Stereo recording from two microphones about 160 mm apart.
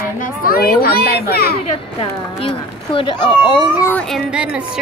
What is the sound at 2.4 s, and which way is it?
Speech, 35° left (ahead or behind).